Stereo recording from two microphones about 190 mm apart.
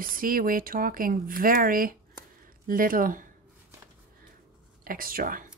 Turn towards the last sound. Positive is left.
turn(degrees=-45)  # may be behind; listen again after turning